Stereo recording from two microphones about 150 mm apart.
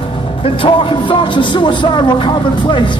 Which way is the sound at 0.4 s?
35° left (ahead or behind).